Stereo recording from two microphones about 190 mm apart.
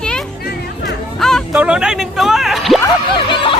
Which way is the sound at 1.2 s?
Centre (ahead or behind).